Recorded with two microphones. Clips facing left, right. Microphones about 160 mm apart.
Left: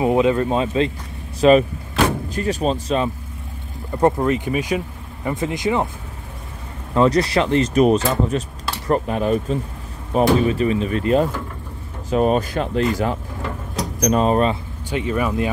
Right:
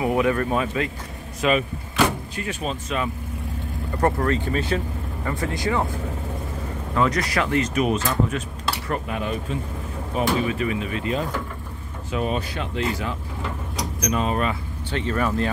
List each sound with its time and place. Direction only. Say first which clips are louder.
0.0 s speech: left 4 dB; 25° left (ahead or behind)
4.0 s speech: left 4 dB; 15° left (ahead or behind)
7.0 s speech: left 6 dB; 30° left (ahead or behind)
14.9 s speech: left 3 dB; 10° left (ahead or behind)